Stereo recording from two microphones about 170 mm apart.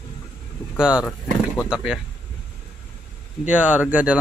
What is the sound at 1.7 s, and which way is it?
Speech, 5° right (ahead or behind).